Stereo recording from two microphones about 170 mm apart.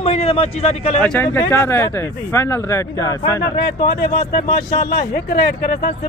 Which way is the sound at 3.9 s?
60° left (ahead or behind).